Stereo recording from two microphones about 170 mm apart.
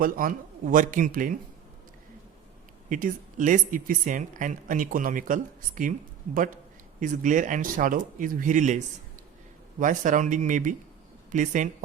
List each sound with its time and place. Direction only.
0.0 s speech: 55° right (ahead or behind)
2.9 s speech: 50° right (ahead or behind)
9.8 s speech: 50° right (ahead or behind)